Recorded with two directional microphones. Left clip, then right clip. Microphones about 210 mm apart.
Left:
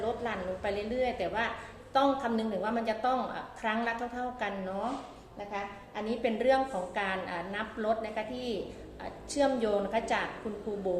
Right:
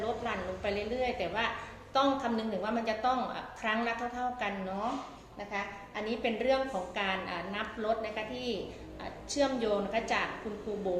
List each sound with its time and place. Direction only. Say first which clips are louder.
0.0 s a woman's voice: left 1 dB; 15° left (ahead or behind)
6.1 s a woman's voice: left 3 dB; 20° left (ahead or behind)